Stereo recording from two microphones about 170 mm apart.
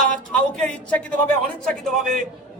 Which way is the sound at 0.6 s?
10° left (ahead or behind).